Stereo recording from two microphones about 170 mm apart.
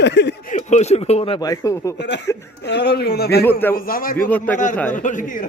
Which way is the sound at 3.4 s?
10° left (ahead or behind).